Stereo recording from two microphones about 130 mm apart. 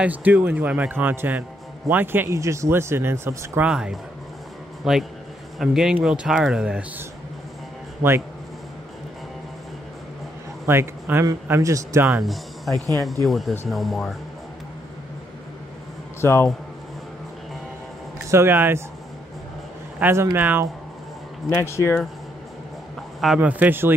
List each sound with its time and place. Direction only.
0.0 s a man's voice: 10° right (ahead or behind)
3.6 s speech: 5° right (ahead or behind)
10.7 s a man's voice: 20° right (ahead or behind)
12.1 s speech: centre (ahead or behind)
16.2 s a man's voice: 20° left (ahead or behind)
18.3 s speech: 15° right (ahead or behind)
20.0 s a man's voice: 20° right (ahead or behind)
21.5 s speech: 20° left (ahead or behind)
23.2 s a man's voice: 5° right (ahead or behind)